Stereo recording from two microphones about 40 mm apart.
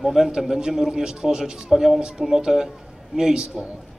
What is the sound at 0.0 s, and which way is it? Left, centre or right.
A man's voice, centre.